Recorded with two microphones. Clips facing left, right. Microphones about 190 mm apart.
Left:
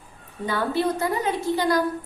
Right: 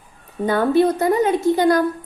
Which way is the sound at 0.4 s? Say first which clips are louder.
Right 8 dB; 50° right (ahead or behind).